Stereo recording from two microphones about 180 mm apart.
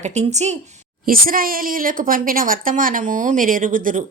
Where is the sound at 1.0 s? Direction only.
55° right (ahead or behind).